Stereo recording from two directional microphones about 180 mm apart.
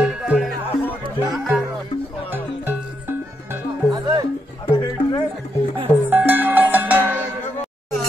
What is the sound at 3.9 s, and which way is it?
Music, 20° right (ahead or behind).